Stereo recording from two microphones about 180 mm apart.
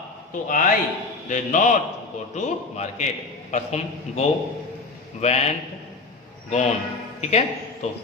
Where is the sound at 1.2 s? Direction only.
45° left (ahead or behind).